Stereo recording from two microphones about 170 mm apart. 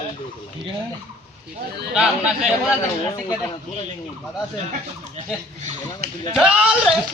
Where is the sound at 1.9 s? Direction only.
5° right (ahead or behind).